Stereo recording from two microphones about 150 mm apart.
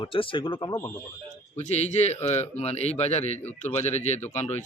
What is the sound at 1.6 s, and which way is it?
A man's voice, 50° left (ahead or behind).